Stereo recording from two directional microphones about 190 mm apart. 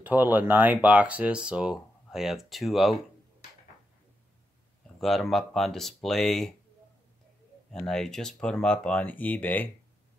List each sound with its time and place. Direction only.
0.0 s speech: 10° right (ahead or behind)
5.0 s speech: centre (ahead or behind)
7.7 s speech: 5° left (ahead or behind)